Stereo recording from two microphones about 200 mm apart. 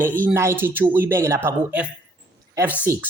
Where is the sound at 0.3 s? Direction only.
10° right (ahead or behind).